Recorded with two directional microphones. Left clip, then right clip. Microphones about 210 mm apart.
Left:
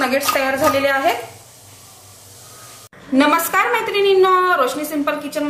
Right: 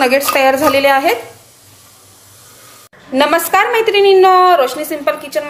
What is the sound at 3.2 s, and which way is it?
A woman's voice, 30° right (ahead or behind).